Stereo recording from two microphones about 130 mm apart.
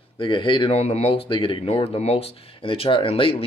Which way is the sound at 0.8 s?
50° left (ahead or behind).